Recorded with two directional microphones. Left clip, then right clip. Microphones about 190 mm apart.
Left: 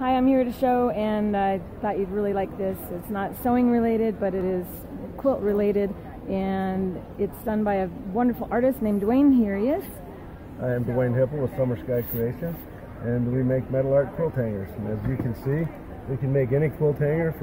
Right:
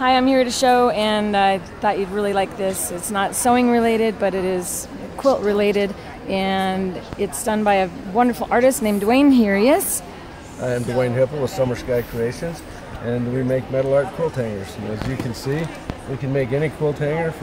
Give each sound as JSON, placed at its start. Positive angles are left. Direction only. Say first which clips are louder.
{"t": 0.0, "sound": "a woman's voice", "louder": "right 6 dB", "side_deg": -15}
{"t": 9.3, "sound": "speech", "louder": "right 8 dB", "side_deg": -40}
{"t": 10.6, "sound": "a woman's voice", "louder": "right 5 dB", "side_deg": -20}
{"t": 16.3, "sound": "speech", "louder": "right 2 dB", "side_deg": 20}